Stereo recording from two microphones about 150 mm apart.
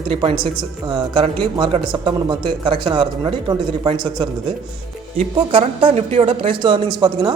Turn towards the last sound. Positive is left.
turn(degrees=-25)  # may be behind; listen again after turning